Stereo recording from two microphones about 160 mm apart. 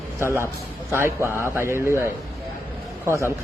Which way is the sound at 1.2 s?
15° right (ahead or behind).